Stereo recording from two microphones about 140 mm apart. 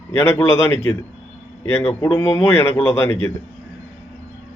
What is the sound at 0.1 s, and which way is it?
Speech, 20° left (ahead or behind).